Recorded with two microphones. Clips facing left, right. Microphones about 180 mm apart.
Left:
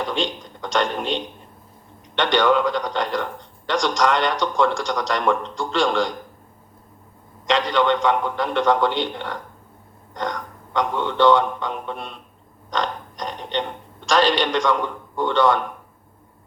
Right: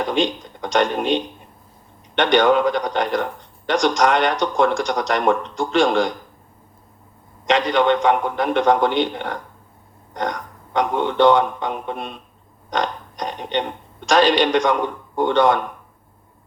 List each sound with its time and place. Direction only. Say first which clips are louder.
0.0 s a man's voice: right 4 dB; 15° right (ahead or behind)
7.4 s a man's voice: right 2 dB; 15° right (ahead or behind)
10.8 s a man's voice: right 3 dB; 15° right (ahead or behind)